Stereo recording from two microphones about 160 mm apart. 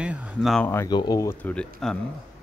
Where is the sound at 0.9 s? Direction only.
25° left (ahead or behind); by 1.6 s 10° left (ahead or behind).